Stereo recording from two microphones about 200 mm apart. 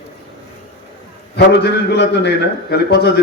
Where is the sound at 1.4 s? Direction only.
55° left (ahead or behind).